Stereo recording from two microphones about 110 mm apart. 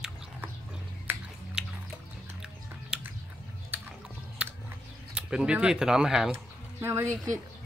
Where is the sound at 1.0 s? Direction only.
5° right (ahead or behind).